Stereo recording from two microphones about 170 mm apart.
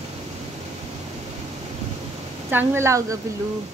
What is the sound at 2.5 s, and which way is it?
Speech, 15° right (ahead or behind).